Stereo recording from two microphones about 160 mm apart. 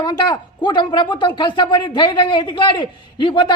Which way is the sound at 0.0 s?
25° left (ahead or behind).